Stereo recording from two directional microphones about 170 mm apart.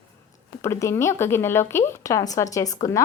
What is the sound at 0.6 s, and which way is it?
Speech, 15° left (ahead or behind).